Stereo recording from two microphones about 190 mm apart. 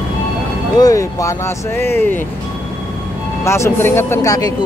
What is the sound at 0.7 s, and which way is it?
Music, 15° left (ahead or behind).